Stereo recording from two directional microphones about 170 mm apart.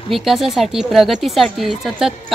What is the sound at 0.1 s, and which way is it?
A woman's voice, centre (ahead or behind).